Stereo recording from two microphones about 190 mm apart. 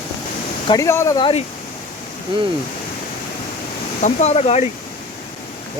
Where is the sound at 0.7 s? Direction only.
15° left (ahead or behind).